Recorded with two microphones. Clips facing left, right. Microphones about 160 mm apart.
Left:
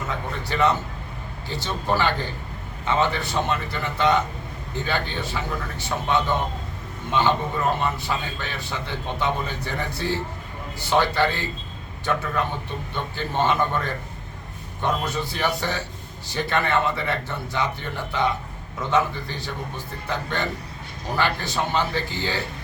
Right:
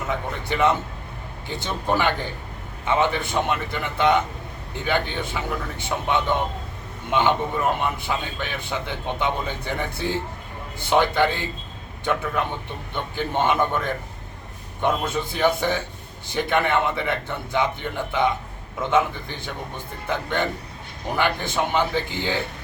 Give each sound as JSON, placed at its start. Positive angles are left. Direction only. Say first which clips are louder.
{"t": 0.1, "sound": "a man's voice", "louder": "right 4 dB", "side_deg": -20}
{"t": 21.2, "sound": "a man's voice", "louder": "right 1 dB", "side_deg": -15}